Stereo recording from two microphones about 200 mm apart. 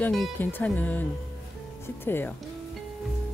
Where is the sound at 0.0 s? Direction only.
5° left (ahead or behind).